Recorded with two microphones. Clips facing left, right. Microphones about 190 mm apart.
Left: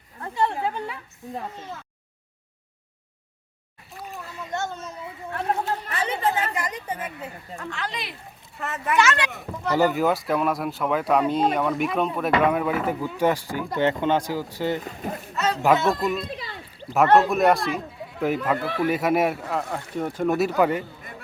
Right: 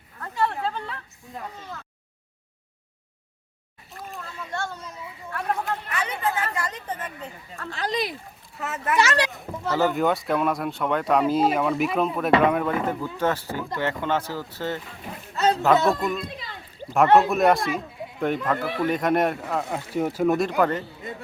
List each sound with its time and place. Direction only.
0.2 s a sound: 25° left (ahead or behind)
4.5 s a child's voice: 20° left (ahead or behind)
5.3 s chatter: 25° left (ahead or behind); by 7.7 s 10° left (ahead or behind)
7.7 s speech: 35° right (ahead or behind)
8.5 s speech: centre (ahead or behind)
9.0 s speech: 35° right (ahead or behind)
9.6 s speech: 15° left (ahead or behind)
9.9 s speech: centre (ahead or behind)
14.8 s speech: 45° left (ahead or behind)
15.6 s speech: 10° left (ahead or behind)
20.0 s speech: 5° right (ahead or behind); by 20.8 s 10° left (ahead or behind)